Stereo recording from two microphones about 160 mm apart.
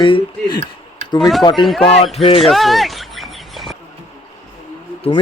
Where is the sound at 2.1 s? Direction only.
35° left (ahead or behind).